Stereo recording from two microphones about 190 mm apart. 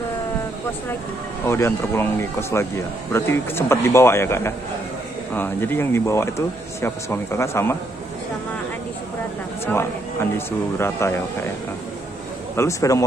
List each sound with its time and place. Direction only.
1.5 s speech: 15° left (ahead or behind)
10.3 s speech: 15° left (ahead or behind)
12.5 s speech: 15° left (ahead or behind)